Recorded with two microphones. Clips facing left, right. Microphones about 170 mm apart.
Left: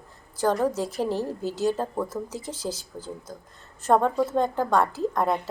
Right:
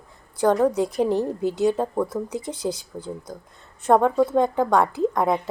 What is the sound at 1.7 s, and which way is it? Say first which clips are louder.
Speech: right 5 dB; 15° right (ahead or behind).